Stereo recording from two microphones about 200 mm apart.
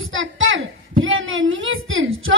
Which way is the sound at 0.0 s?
75° right (ahead or behind).